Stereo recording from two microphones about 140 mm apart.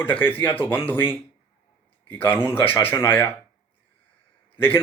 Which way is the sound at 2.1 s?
15° left (ahead or behind).